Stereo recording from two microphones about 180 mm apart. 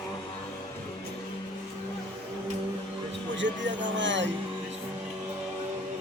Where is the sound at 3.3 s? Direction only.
90° right.